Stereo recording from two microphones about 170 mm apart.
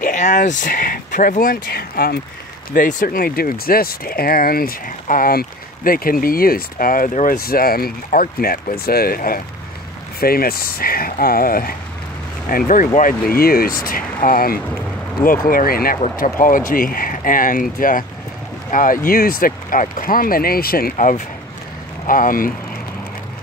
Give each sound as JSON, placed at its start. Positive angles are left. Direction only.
{"t": 0.0, "sound": "speech", "side_deg": 45}
{"t": 2.7, "sound": "speech", "side_deg": 50}